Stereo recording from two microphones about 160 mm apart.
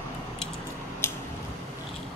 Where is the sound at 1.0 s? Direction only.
15° left (ahead or behind).